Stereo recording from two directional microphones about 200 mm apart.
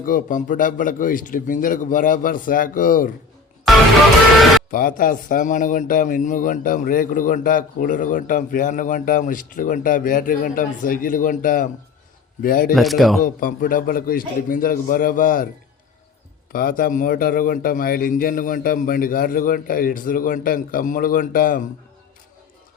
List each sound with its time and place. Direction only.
0.0 s a man's voice: 40° left (ahead or behind)
4.7 s a man's voice: 45° left (ahead or behind)
12.7 s speech: centre (ahead or behind)
13.2 s a man's voice: 45° left (ahead or behind)
16.5 s a man's voice: 45° left (ahead or behind)